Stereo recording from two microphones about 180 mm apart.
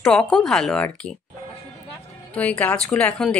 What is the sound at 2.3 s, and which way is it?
A woman's voice, 5° left (ahead or behind).